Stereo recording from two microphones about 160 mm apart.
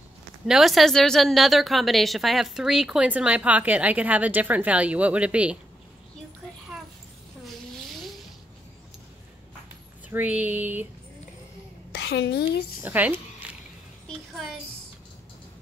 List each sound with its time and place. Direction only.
0.5 s a woman's voice: centre (ahead or behind)
10.0 s a woman's voice: 10° right (ahead or behind)
11.9 s a woman's voice: 90° left
12.8 s speech: 10° right (ahead or behind)